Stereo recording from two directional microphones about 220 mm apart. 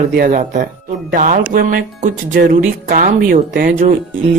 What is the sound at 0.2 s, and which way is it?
Speech, 35° right (ahead or behind).